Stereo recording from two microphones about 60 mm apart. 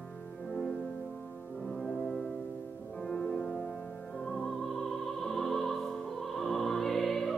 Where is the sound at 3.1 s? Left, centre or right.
Centre.